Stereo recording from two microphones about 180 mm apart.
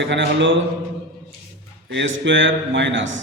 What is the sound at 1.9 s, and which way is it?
Mantra, 80° right.